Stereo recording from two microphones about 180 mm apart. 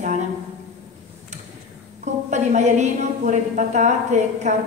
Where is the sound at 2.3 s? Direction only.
40° right (ahead or behind).